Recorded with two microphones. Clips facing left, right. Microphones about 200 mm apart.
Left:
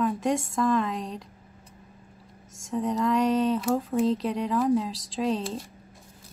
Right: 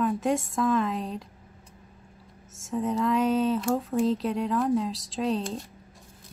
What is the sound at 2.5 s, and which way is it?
Speech, centre (ahead or behind).